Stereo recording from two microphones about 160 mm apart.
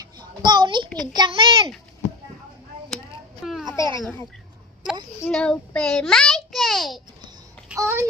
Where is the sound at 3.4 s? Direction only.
5° right (ahead or behind).